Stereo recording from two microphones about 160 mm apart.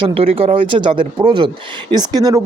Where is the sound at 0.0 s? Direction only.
35° right (ahead or behind).